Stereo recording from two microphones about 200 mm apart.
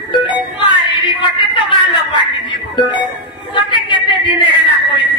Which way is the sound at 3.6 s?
25° left (ahead or behind).